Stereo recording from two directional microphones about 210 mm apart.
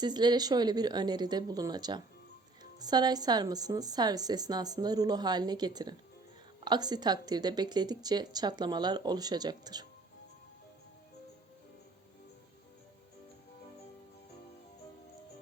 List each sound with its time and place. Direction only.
0.0 s a woman's voice: 20° right (ahead or behind)